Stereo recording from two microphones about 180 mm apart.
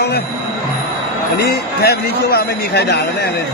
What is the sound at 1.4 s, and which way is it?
A man's voice, 60° left (ahead or behind).